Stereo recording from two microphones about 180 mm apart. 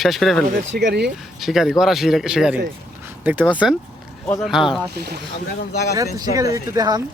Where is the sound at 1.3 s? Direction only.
Centre (ahead or behind).